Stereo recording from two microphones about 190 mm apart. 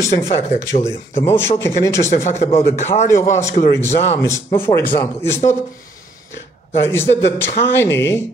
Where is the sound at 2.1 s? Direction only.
40° left (ahead or behind).